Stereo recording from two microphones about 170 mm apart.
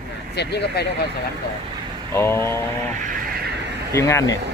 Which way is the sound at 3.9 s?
15° left (ahead or behind).